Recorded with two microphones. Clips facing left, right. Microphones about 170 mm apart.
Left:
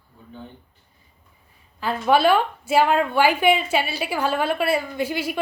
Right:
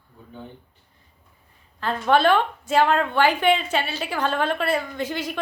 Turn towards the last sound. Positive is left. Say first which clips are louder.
# left 3 dB
turn(degrees=10)  # may be behind; listen again after turning